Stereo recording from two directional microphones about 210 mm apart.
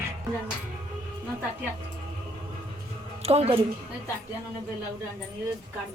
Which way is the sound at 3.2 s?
30° right (ahead or behind).